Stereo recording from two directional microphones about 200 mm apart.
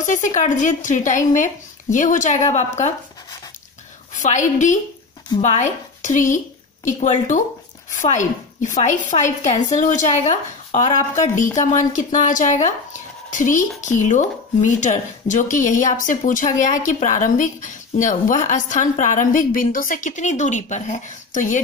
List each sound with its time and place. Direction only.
0.0 s speech: 40° left (ahead or behind)
4.2 s a woman's voice: 40° left (ahead or behind)